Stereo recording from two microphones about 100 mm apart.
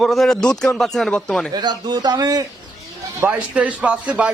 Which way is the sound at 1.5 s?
45° right (ahead or behind).